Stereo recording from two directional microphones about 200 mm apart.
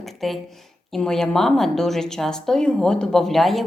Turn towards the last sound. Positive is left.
turn(degrees=0)  # may be behind; listen again after turning